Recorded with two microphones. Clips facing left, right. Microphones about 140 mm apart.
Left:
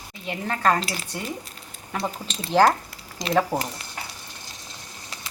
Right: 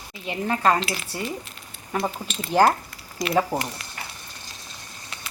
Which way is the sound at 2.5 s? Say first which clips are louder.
Even; 10° right (ahead or behind).